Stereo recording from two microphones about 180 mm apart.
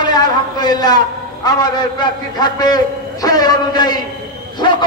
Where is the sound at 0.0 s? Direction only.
25° left (ahead or behind).